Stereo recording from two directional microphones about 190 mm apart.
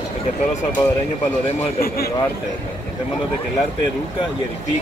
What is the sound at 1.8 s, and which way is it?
Speech, 55° left (ahead or behind).